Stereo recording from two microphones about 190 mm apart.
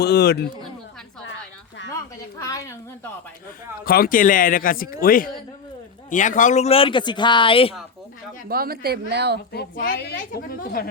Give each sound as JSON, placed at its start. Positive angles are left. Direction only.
{"t": 0.0, "sound": "speech", "side_deg": 55}
{"t": 2.0, "sound": "a sound", "side_deg": 15}
{"t": 3.8, "sound": "a man's voice", "side_deg": 50}
{"t": 8.4, "sound": "a woman's voice", "side_deg": -50}
{"t": 9.5, "sound": "speech", "side_deg": 55}